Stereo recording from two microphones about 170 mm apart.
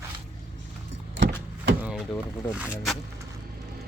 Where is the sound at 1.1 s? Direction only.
90° right.